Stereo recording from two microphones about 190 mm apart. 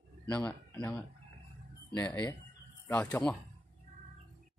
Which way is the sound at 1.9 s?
20° left (ahead or behind).